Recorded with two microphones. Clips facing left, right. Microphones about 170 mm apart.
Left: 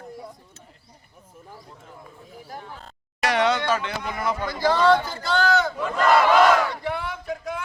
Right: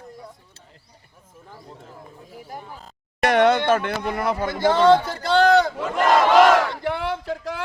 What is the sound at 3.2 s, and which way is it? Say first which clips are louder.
Speech: right 5 dB; 55° right (ahead or behind).